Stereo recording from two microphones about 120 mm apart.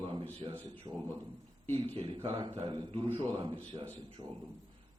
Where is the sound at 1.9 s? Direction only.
45° right (ahead or behind).